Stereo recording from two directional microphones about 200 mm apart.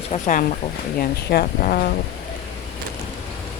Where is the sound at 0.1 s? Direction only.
40° left (ahead or behind).